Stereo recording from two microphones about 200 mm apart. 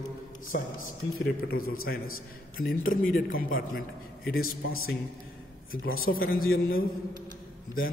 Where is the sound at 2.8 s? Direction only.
45° left (ahead or behind).